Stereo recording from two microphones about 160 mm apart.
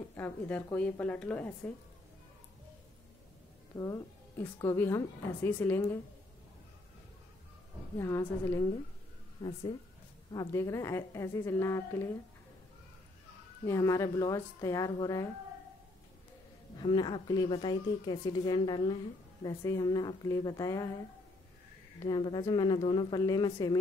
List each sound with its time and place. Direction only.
0.1 s a woman's voice: 10° left (ahead or behind)
3.7 s a woman's voice: 20° left (ahead or behind)
8.0 s a woman's voice: 15° left (ahead or behind)
9.4 s a woman's voice: 30° left (ahead or behind)
13.7 s speech: 20° left (ahead or behind)
16.7 s speech: 30° left (ahead or behind)
22.0 s speech: 25° left (ahead or behind)